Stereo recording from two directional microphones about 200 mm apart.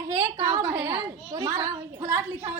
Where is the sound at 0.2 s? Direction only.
15° right (ahead or behind).